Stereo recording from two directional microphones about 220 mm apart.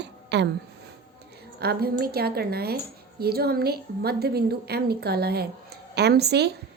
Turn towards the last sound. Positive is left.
turn(degrees=-50)  # may be behind; listen again after turning